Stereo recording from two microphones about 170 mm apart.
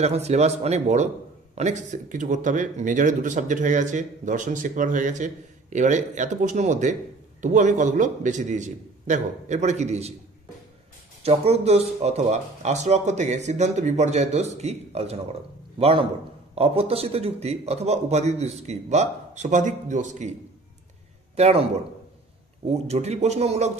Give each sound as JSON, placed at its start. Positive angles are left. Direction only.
{"t": 0.0, "sound": "speech", "side_deg": -40}
{"t": 11.2, "sound": "speech", "side_deg": -40}
{"t": 21.4, "sound": "speech", "side_deg": -40}
{"t": 22.7, "sound": "speech", "side_deg": -40}